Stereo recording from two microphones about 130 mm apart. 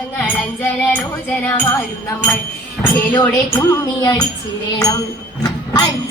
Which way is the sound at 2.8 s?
15° left (ahead or behind).